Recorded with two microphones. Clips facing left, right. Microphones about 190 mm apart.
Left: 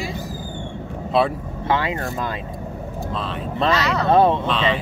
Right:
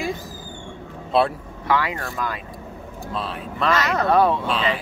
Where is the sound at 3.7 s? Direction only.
50° right (ahead or behind).